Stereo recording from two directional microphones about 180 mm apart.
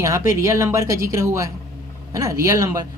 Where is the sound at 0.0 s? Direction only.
15° right (ahead or behind).